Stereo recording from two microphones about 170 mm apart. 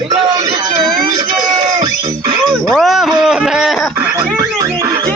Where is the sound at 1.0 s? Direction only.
25° right (ahead or behind).